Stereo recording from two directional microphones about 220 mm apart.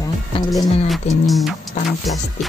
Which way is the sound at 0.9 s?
Centre (ahead or behind).